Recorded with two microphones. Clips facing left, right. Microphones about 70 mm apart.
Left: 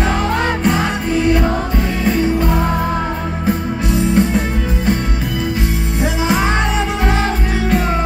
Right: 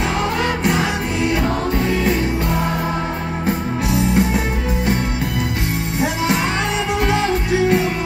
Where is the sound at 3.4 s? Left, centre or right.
Centre.